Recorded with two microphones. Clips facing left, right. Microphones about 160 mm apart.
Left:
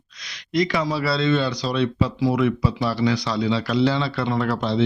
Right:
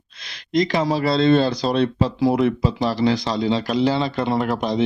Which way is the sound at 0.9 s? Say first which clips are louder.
Right 5 dB; 45° right (ahead or behind).